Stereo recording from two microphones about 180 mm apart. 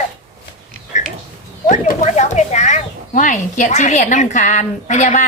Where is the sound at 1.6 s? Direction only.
45° left (ahead or behind).